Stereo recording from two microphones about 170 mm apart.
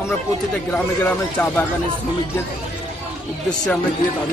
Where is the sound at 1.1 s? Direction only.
10° left (ahead or behind).